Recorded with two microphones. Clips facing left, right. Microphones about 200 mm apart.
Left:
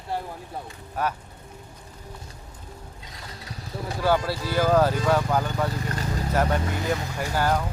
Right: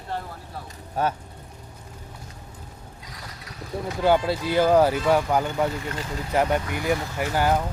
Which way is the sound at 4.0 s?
20° right (ahead or behind).